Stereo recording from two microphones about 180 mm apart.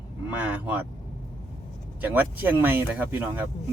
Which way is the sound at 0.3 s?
10° right (ahead or behind).